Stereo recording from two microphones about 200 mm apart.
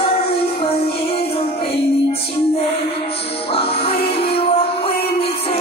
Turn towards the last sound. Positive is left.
turn(degrees=30)  # may be behind; listen again after turning